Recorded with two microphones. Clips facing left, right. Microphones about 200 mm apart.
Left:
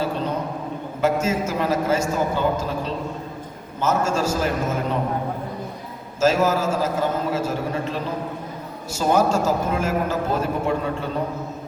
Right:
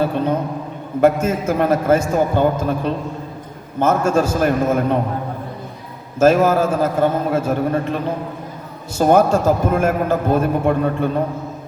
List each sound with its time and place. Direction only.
1.0 s a man's voice: 55° right (ahead or behind)
6.1 s a man's voice: 55° right (ahead or behind)